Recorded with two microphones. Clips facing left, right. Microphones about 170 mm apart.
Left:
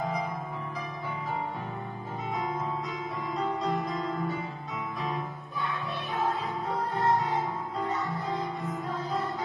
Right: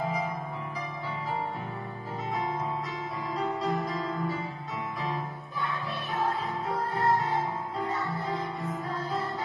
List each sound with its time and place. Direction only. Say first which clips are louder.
0.0 s music: even; 5° right (ahead or behind)
2.3 s music: even; centre (ahead or behind)